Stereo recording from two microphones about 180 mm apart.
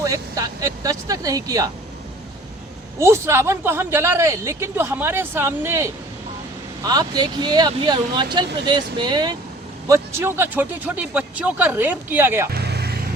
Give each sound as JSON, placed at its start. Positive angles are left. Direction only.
{"t": 0.0, "sound": "speech", "side_deg": -20}
{"t": 3.0, "sound": "speech", "side_deg": -15}
{"t": 12.5, "sound": "vehicle", "side_deg": -65}